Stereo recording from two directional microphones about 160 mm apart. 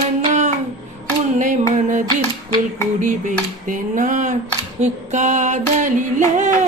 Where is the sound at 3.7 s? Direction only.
55° right (ahead or behind).